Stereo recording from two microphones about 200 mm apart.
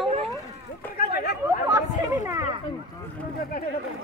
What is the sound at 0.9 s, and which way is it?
Chatter, 50° left (ahead or behind).